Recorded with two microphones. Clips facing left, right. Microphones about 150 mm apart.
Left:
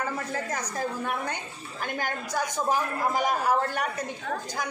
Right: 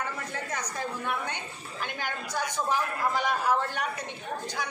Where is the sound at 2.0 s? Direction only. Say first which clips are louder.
Left 4 dB; 45° left (ahead or behind).